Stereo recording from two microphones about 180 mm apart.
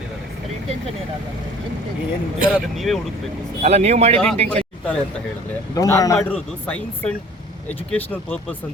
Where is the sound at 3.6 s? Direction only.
35° right (ahead or behind).